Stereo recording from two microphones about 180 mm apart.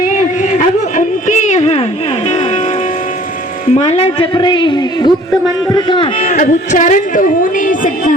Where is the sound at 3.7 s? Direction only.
35° left (ahead or behind).